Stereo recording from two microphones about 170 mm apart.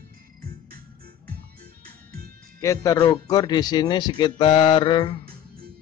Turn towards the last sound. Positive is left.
turn(degrees=30)  # may be behind; listen again after turning